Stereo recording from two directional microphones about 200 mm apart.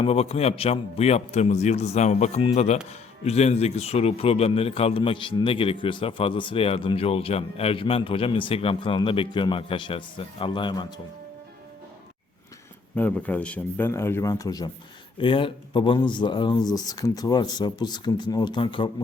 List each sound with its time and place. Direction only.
0.0 s a man's voice: 30° left (ahead or behind)
13.0 s a man's voice: 5° left (ahead or behind); by 18.9 s 25° left (ahead or behind)